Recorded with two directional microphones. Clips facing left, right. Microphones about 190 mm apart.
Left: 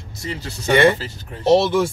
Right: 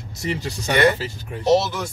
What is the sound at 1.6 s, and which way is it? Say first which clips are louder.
Speech: left 7 dB; 30° left (ahead or behind).